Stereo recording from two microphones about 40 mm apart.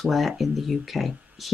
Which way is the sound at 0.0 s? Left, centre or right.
Centre.